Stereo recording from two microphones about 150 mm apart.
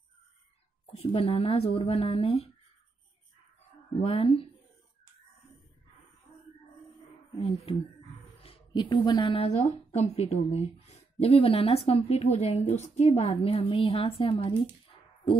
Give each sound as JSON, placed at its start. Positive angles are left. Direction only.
{"t": 0.9, "sound": "a woman's voice", "side_deg": 35}
{"t": 4.0, "sound": "a woman's voice", "side_deg": 40}
{"t": 7.3, "sound": "a woman's voice", "side_deg": 40}
{"t": 8.4, "sound": "a sound", "side_deg": 40}
{"t": 8.8, "sound": "a woman's voice", "side_deg": 30}